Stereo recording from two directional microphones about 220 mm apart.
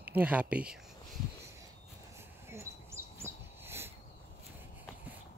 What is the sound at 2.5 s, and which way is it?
Bird, 10° right (ahead or behind).